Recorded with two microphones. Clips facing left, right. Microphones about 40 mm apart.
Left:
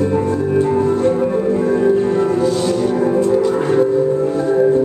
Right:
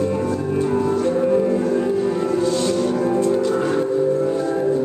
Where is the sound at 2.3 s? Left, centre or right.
Centre.